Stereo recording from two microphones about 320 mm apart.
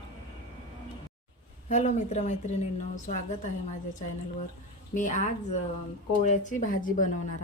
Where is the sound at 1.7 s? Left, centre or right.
Left.